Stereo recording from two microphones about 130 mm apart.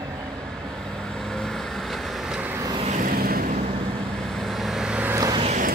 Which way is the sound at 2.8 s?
75° right (ahead or behind).